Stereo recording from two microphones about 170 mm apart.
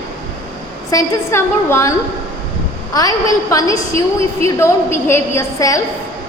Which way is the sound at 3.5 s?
20° left (ahead or behind).